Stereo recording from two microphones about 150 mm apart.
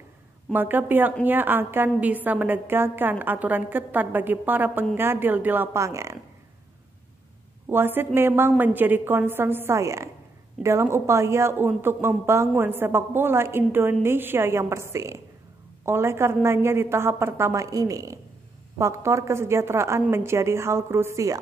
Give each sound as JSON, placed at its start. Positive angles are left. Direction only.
{"t": 0.5, "sound": "speech", "side_deg": -10}
{"t": 7.7, "sound": "a woman's voice", "side_deg": -15}